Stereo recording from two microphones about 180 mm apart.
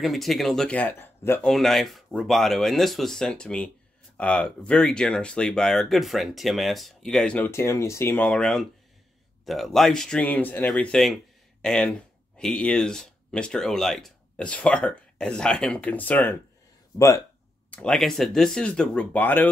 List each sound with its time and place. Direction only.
0.0 s speech: centre (ahead or behind)
1.5 s speech: centre (ahead or behind); by 17.1 s 20° left (ahead or behind)
17.6 s speech: 5° left (ahead or behind)